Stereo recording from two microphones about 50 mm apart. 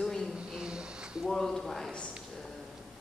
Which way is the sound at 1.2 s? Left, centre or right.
Centre.